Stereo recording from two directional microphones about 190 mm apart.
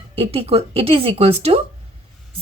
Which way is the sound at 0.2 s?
30° right (ahead or behind).